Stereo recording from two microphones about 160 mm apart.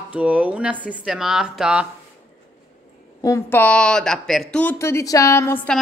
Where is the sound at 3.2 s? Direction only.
15° left (ahead or behind).